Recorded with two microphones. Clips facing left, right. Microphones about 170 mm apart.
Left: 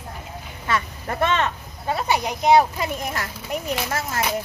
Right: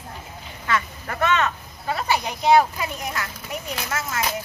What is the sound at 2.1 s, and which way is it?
Speech, 20° left (ahead or behind).